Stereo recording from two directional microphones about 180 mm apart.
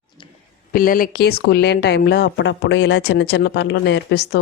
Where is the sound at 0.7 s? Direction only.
50° left (ahead or behind).